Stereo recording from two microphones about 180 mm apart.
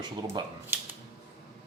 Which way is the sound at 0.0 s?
25° right (ahead or behind).